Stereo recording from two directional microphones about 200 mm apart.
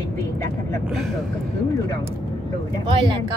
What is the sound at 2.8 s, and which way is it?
Speech, 25° right (ahead or behind).